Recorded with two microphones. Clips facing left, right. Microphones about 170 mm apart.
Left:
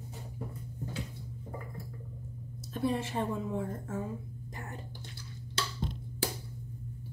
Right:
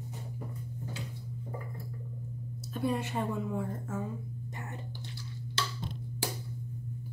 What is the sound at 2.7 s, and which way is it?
A woman's voice, 35° left (ahead or behind).